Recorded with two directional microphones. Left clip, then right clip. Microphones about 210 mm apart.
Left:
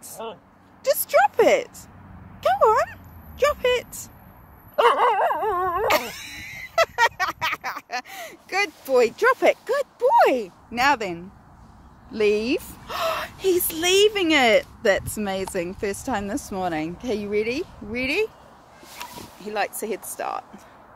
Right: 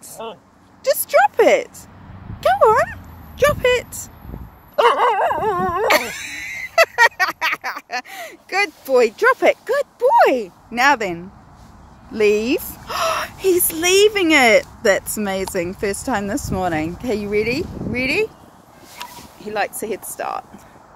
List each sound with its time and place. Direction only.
0.2 s a sound: 5° left (ahead or behind)
0.8 s a sound: 5° right (ahead or behind)
4.7 s dog: centre (ahead or behind)
12.1 s a woman's voice: centre (ahead or behind)
19.0 s bow-wow: 35° left (ahead or behind)
19.4 s speech: 5° right (ahead or behind)